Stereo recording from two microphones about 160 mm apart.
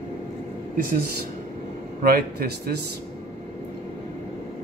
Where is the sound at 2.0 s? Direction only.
70° right (ahead or behind).